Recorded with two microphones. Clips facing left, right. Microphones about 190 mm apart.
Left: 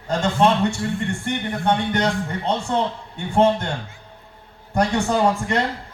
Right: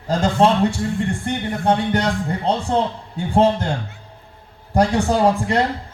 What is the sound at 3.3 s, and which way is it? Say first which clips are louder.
Speech: right 1 dB; 35° right (ahead or behind).